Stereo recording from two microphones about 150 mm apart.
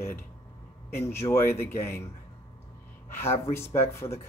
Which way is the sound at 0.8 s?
15° left (ahead or behind).